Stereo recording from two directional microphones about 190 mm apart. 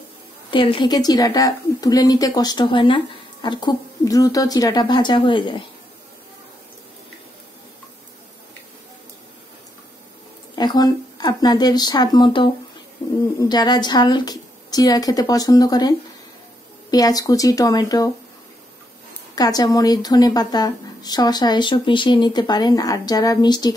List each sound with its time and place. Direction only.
0.5 s speech: 25° left (ahead or behind)
10.5 s speech: 20° left (ahead or behind)
16.9 s speech: 20° left (ahead or behind)
19.3 s speech: 20° left (ahead or behind)